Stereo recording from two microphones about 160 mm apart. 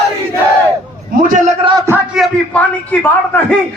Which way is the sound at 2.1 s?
5° left (ahead or behind).